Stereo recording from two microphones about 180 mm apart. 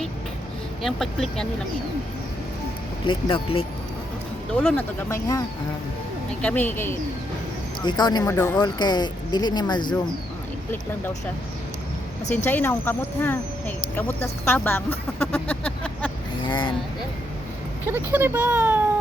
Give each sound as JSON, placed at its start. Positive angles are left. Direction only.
{"t": 0.8, "sound": "speech", "side_deg": 0}
{"t": 3.1, "sound": "speech", "side_deg": 30}
{"t": 4.5, "sound": "speech", "side_deg": 10}
{"t": 7.8, "sound": "speech", "side_deg": 25}
{"t": 12.5, "sound": "speech", "side_deg": 10}
{"t": 16.4, "sound": "speech", "side_deg": 25}
{"t": 17.8, "sound": "speech", "side_deg": -10}